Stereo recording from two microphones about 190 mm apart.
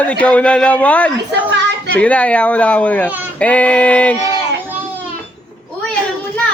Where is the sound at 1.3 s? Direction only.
65° right (ahead or behind).